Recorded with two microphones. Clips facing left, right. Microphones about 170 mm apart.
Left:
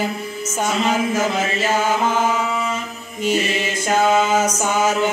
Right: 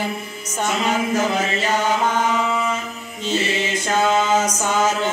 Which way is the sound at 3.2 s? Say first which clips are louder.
Left 2 dB; 10° left (ahead or behind).